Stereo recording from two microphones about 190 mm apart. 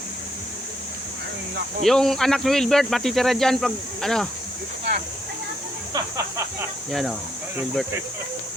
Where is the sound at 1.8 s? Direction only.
Centre (ahead or behind).